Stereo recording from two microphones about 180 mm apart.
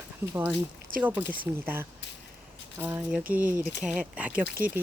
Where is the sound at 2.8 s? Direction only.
10° right (ahead or behind).